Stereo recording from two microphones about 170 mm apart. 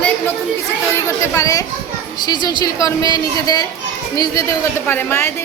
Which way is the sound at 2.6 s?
20° left (ahead or behind).